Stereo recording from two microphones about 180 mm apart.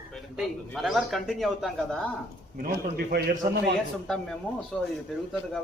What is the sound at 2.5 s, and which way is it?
A man's voice, 55° right (ahead or behind).